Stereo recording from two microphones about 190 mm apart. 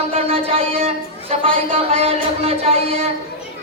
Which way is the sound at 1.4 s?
30° right (ahead or behind).